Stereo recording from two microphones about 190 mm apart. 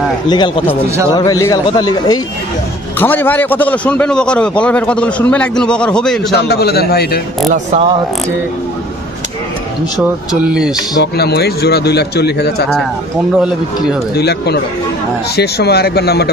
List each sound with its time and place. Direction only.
0.3 s a man's voice: 25° left (ahead or behind)
3.0 s a man's voice: 10° left (ahead or behind)
6.3 s speech: 55° left (ahead or behind)
7.5 s speech: 35° right (ahead or behind)
10.0 s speech: 5° right (ahead or behind)
11.0 s speech: 60° left (ahead or behind)
13.4 s speech: 5° right (ahead or behind)
14.1 s speech: 60° left (ahead or behind)